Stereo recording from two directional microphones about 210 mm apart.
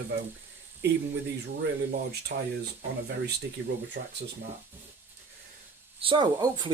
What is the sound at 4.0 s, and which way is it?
Speech, 55° right (ahead or behind).